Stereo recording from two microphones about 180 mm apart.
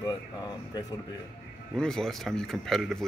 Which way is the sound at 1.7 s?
5° left (ahead or behind).